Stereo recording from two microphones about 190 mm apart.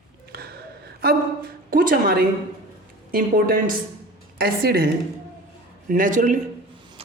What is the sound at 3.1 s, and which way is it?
A man's voice, 50° right (ahead or behind).